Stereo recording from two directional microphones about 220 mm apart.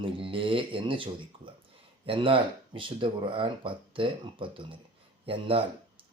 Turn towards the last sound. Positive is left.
turn(degrees=-25)  # may be behind; listen again after turning